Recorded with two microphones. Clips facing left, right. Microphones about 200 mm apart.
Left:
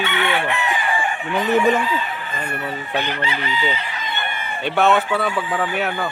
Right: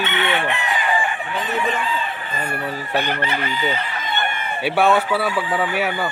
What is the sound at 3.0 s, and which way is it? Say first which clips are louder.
Chicken: right 2 dB; 50° right (ahead or behind).